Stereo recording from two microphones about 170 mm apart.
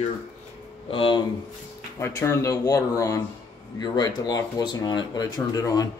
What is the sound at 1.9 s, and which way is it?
Speech, 15° left (ahead or behind).